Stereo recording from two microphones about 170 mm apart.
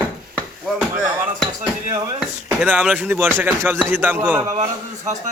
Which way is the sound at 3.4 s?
15° right (ahead or behind).